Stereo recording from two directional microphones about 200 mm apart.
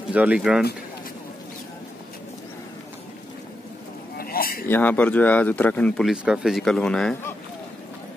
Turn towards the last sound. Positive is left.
turn(degrees=5)  # may be behind; listen again after turning